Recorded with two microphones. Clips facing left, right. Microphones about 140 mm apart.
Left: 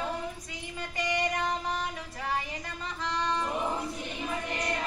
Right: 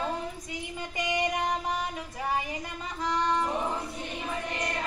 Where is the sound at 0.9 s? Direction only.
15° right (ahead or behind).